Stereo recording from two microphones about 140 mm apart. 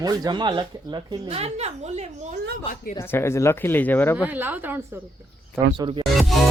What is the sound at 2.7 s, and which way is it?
Speech, 80° left.